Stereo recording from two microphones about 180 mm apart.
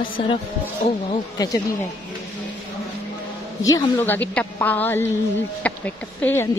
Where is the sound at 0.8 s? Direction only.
35° left (ahead or behind).